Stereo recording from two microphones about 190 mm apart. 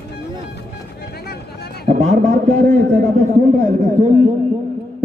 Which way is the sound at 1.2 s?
55° left (ahead or behind).